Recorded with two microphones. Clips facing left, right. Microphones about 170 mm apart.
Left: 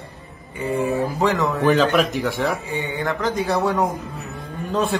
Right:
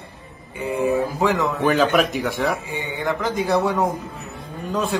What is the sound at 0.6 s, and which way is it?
Speech, 15° right (ahead or behind).